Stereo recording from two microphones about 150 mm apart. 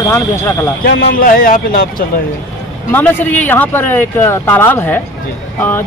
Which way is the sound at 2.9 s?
10° left (ahead or behind).